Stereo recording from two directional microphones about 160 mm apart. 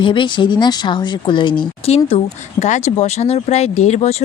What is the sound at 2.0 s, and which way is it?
Speech, 45° left (ahead or behind).